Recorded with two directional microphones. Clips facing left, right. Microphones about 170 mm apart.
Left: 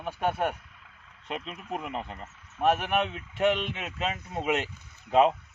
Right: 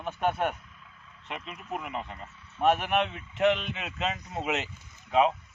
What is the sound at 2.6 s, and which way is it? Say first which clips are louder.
Speech: even; centre (ahead or behind).